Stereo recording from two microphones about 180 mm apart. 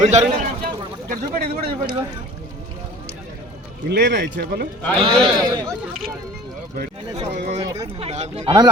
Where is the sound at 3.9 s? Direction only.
70° right (ahead or behind).